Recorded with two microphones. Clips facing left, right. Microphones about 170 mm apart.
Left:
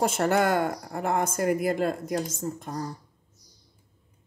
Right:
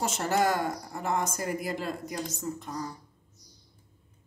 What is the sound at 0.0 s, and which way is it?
Speech, 60° left (ahead or behind).